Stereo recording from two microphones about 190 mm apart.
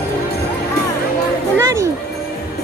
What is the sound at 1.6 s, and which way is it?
Music, 15° right (ahead or behind).